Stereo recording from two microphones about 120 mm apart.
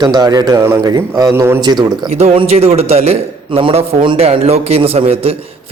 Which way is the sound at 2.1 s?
65° right (ahead or behind).